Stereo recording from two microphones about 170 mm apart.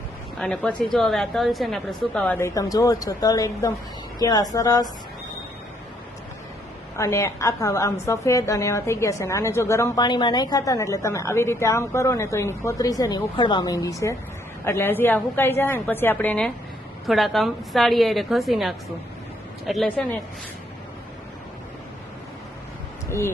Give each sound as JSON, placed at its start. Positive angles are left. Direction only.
{"t": 0.3, "sound": "a woman's voice", "side_deg": 5}
{"t": 6.9, "sound": "a woman's voice", "side_deg": 15}
{"t": 23.0, "sound": "speech", "side_deg": 15}